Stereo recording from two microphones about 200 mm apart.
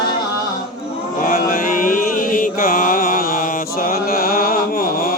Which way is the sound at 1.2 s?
45° left (ahead or behind).